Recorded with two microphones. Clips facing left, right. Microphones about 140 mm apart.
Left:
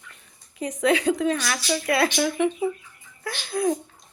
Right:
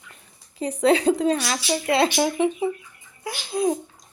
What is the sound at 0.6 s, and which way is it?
Speech, 30° right (ahead or behind).